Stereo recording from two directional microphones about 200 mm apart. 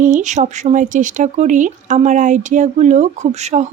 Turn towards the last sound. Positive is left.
turn(degrees=-35)  # may be behind; listen again after turning